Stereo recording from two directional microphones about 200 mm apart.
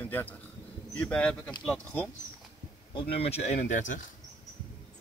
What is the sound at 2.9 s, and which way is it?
Speech, 30° left (ahead or behind).